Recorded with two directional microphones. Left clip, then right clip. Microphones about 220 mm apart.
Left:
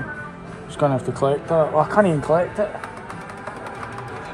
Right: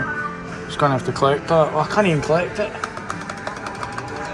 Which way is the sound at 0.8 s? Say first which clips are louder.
Right 2 dB; 15° left (ahead or behind).